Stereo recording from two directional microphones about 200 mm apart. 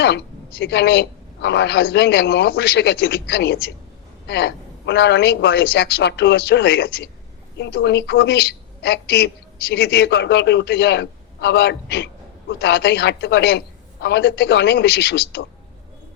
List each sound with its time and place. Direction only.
0.6 s a woman's voice: 55° left (ahead or behind)